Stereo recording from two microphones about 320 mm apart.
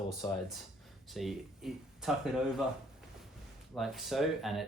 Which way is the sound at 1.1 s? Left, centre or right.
Centre.